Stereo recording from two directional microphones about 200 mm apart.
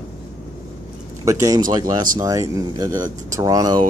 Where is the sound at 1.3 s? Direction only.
15° right (ahead or behind).